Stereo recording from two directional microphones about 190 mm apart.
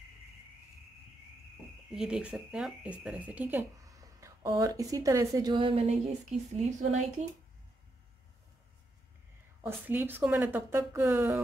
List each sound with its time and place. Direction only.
1.9 s speech: 5° right (ahead or behind); by 7.2 s 40° right (ahead or behind)
9.6 s speech: 10° right (ahead or behind)